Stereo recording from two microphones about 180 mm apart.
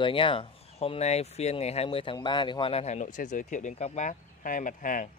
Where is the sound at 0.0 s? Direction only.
30° left (ahead or behind).